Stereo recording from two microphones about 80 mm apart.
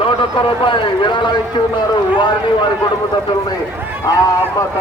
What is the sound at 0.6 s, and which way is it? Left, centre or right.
Speech, left.